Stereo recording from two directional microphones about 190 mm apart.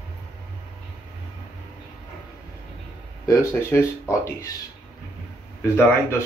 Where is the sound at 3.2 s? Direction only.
15° left (ahead or behind).